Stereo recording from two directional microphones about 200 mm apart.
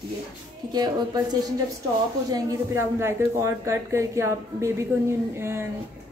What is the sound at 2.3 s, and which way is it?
Speech, 15° right (ahead or behind).